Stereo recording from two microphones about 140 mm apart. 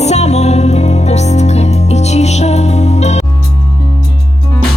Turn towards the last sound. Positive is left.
turn(degrees=50)  # may be behind; listen again after turning